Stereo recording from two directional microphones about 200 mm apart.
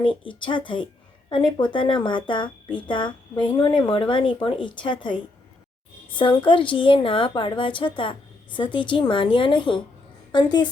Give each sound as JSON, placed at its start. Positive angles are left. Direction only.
{"t": 0.0, "sound": "speech", "side_deg": 25}